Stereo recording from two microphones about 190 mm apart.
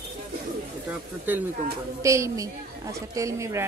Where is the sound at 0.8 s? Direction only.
10° right (ahead or behind).